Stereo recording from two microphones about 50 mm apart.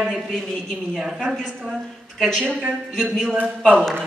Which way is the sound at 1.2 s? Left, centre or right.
Centre.